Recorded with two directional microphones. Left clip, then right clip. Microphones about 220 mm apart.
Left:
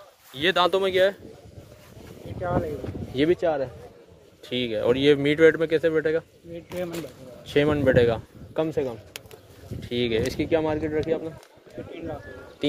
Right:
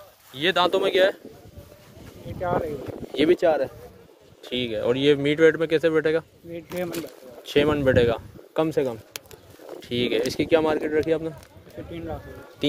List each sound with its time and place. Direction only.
0.3 s speech: centre (ahead or behind)
2.4 s speech: 40° right (ahead or behind)
3.3 s speech: 20° right (ahead or behind)
4.4 s speech: 5° left (ahead or behind)
6.5 s speech: 40° right (ahead or behind)
7.4 s speech: 5° right (ahead or behind)
8.5 s speech: 20° right (ahead or behind)
9.8 s speech: 5° right (ahead or behind); by 11.3 s 25° right (ahead or behind)